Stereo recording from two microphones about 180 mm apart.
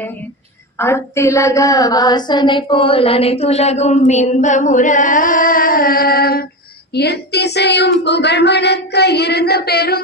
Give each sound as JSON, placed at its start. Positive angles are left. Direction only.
{"t": 0.7, "sound": "a woman's voice", "side_deg": 15}
{"t": 6.9, "sound": "child singing", "side_deg": 65}